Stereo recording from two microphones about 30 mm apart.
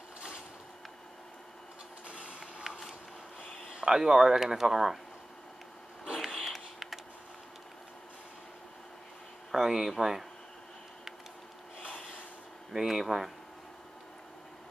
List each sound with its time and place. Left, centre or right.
2.0 s printer: right
2.4 s a sound: right
3.8 s speech: centre
6.1 s a sound: centre
9.5 s speech: centre
12.7 s speech: centre